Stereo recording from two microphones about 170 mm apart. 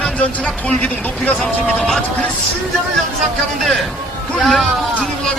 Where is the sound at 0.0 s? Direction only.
5° left (ahead or behind).